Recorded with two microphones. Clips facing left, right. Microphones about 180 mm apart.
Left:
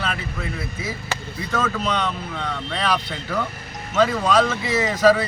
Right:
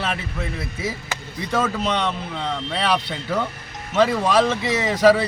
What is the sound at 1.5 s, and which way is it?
Speech, 25° right (ahead or behind).